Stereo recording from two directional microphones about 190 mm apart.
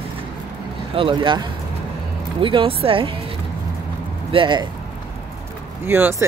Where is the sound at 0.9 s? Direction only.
25° right (ahead or behind).